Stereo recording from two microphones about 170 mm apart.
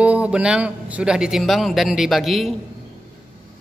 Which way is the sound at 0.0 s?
5° right (ahead or behind).